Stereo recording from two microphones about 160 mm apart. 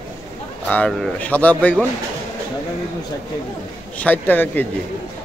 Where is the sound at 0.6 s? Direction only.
10° left (ahead or behind).